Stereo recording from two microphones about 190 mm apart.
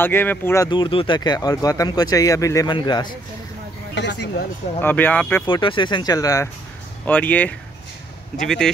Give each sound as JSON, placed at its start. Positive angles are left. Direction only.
{"t": 0.0, "sound": "speech", "side_deg": 10}
{"t": 0.7, "sound": "speech", "side_deg": 25}
{"t": 3.9, "sound": "speech", "side_deg": 65}
{"t": 4.8, "sound": "speech", "side_deg": 10}
{"t": 5.5, "sound": "speech", "side_deg": 25}